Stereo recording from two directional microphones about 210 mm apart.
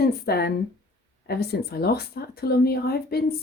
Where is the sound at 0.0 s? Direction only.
50° left (ahead or behind).